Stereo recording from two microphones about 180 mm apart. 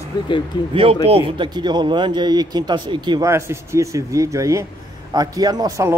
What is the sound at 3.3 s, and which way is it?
A man's voice, 15° right (ahead or behind).